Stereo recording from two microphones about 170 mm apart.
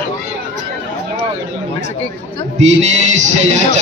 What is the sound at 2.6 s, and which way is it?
Music, 40° right (ahead or behind).